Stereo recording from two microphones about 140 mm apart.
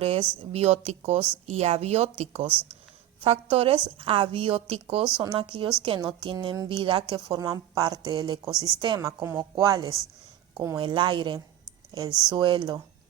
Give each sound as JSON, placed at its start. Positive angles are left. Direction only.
{"t": 0.0, "sound": "a woman's voice", "side_deg": -45}
{"t": 10.8, "sound": "a woman's voice", "side_deg": -35}